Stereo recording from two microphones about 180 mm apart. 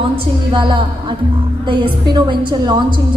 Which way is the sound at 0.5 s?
25° right (ahead or behind).